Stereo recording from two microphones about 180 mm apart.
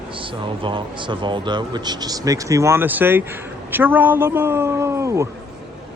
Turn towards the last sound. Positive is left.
turn(degrees=-15)  # may be behind; listen again after turning